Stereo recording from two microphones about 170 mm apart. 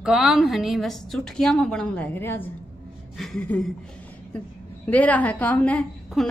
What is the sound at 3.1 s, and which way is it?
Speech, centre (ahead or behind).